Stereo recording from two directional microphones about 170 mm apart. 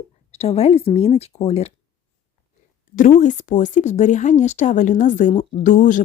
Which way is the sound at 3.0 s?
45° left (ahead or behind).